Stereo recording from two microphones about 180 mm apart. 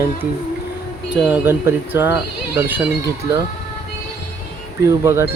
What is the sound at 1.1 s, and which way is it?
Speech, 10° right (ahead or behind).